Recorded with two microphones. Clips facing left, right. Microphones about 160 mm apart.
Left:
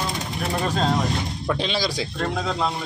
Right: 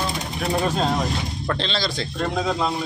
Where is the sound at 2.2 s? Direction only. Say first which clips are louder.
Right 3 dB; 10° right (ahead or behind).